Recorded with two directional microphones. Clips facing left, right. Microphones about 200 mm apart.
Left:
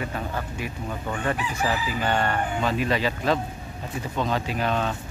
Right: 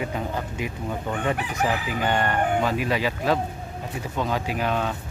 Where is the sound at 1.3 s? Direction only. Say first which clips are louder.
Right 1 dB; 60° right (ahead or behind).